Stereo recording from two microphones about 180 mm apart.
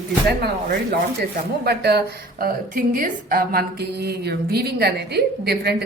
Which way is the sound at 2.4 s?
55° right (ahead or behind).